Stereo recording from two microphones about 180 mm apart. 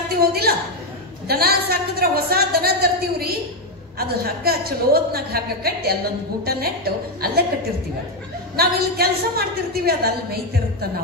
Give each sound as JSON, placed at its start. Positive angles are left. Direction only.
{"t": 0.2, "sound": "a woman's voice", "side_deg": -60}
{"t": 8.5, "sound": "speech", "side_deg": -60}